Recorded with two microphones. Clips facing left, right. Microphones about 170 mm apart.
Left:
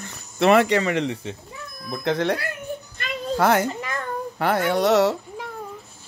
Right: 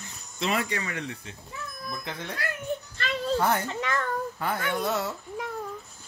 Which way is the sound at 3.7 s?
5° left (ahead or behind).